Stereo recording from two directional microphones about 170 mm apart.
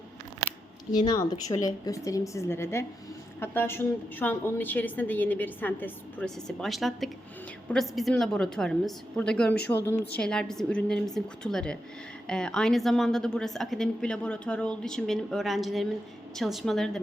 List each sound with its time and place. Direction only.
0.9 s a woman's voice: 25° left (ahead or behind); by 17.0 s centre (ahead or behind)